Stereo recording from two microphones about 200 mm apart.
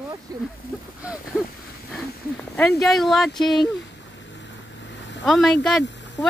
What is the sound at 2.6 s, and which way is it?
Speech, 5° left (ahead or behind).